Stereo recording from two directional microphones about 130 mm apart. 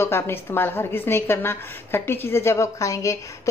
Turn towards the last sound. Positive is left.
turn(degrees=25)  # may be behind; listen again after turning